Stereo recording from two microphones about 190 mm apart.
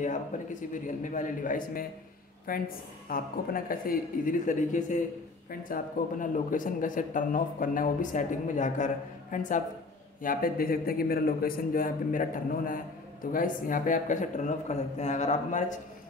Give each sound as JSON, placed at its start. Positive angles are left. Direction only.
{"t": 0.3, "sound": "a man's voice", "side_deg": 40}